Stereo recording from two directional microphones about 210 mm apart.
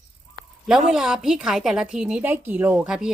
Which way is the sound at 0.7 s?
5° right (ahead or behind).